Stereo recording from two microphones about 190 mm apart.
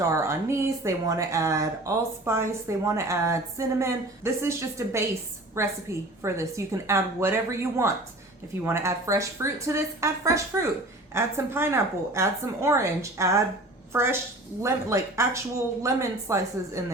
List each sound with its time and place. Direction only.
0.1 s speech: 15° right (ahead or behind)